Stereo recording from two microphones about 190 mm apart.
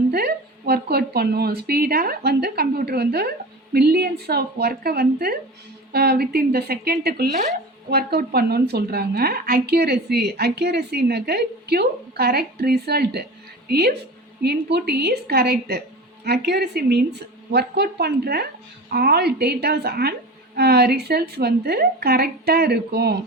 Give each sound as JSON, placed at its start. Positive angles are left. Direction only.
{"t": 0.1, "sound": "speech", "side_deg": -55}